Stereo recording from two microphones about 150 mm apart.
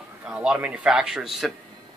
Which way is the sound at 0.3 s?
5° right (ahead or behind).